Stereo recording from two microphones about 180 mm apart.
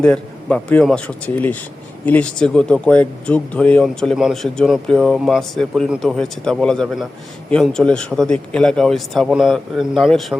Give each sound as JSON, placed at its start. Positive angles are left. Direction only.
{"t": 0.0, "sound": "speech", "side_deg": 5}